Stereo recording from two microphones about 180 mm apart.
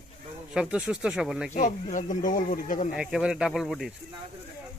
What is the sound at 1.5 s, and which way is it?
Speech, 45° left (ahead or behind).